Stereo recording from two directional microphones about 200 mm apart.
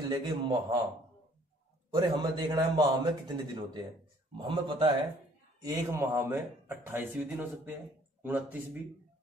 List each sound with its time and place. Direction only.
0.1 s a man's voice: 20° right (ahead or behind)
2.0 s a man's voice: 20° right (ahead or behind)
5.6 s speech: 15° right (ahead or behind)